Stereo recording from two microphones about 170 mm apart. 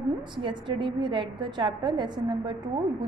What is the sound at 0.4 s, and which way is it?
A woman's voice, 30° right (ahead or behind).